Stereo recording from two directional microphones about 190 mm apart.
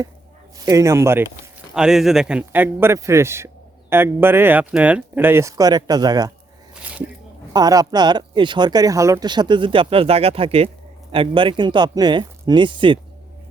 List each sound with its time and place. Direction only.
0.6 s a man's voice: 15° right (ahead or behind)
1.7 s a man's voice: 5° right (ahead or behind); by 6.3 s 20° right (ahead or behind)
6.8 s speech: 10° right (ahead or behind)
7.5 s speech: 20° right (ahead or behind)